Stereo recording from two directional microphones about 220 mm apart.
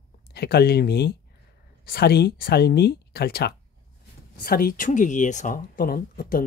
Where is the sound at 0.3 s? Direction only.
45° left (ahead or behind).